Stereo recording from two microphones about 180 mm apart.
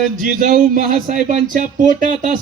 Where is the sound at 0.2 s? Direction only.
50° right (ahead or behind).